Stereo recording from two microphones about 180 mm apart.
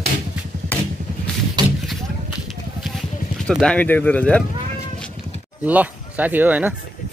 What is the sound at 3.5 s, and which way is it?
Speech, 5° left (ahead or behind).